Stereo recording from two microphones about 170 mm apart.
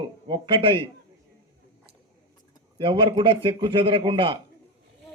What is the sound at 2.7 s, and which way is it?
A man's voice, 30° right (ahead or behind).